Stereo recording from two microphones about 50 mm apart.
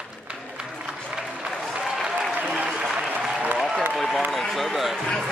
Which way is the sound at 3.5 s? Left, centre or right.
Centre.